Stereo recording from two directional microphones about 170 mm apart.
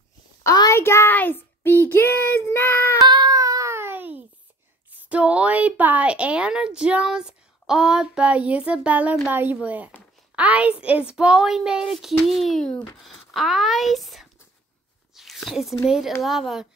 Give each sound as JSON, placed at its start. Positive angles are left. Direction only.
{"t": 0.4, "sound": "a child's voice", "side_deg": 20}
{"t": 1.9, "sound": "child singing", "side_deg": 15}
{"t": 3.0, "sound": "a sound", "side_deg": -25}
{"t": 5.1, "sound": "a woman's voice", "side_deg": -5}